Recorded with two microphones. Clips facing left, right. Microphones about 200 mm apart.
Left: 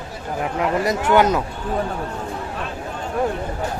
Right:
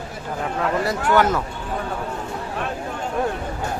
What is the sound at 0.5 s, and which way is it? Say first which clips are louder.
Speech: left 2 dB; 20° left (ahead or behind).